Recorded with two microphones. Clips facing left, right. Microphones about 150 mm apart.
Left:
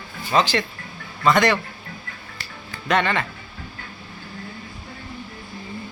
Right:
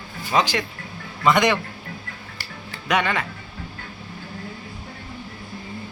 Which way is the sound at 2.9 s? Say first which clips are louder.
Left 1 dB; 10° right (ahead or behind).